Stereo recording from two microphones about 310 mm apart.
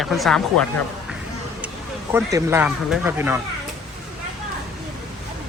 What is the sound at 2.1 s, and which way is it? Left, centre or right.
Speech, centre.